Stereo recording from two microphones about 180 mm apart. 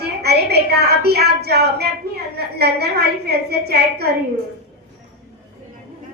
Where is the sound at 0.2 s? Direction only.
65° right (ahead or behind).